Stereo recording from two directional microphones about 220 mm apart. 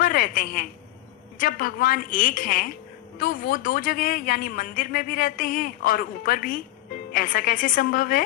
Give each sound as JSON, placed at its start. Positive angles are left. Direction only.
{"t": 0.0, "sound": "a man's voice", "side_deg": 40}